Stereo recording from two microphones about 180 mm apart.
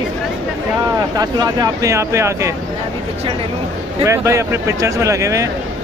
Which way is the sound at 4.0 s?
15° right (ahead or behind).